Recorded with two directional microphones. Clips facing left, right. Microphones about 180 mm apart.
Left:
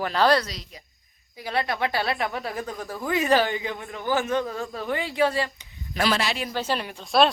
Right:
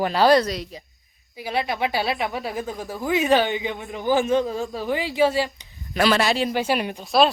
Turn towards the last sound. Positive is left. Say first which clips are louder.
# right 2 dB
turn(degrees=0)  # may be behind; listen again after turning